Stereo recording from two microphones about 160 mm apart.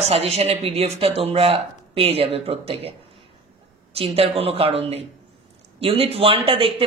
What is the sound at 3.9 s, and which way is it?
Speech, 40° right (ahead or behind).